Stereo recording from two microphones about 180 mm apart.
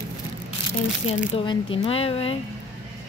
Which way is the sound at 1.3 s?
25° left (ahead or behind).